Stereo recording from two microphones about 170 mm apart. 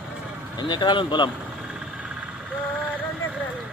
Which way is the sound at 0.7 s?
25° left (ahead or behind).